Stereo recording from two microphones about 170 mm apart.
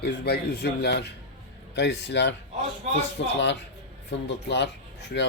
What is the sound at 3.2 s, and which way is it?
Speech, 90° left.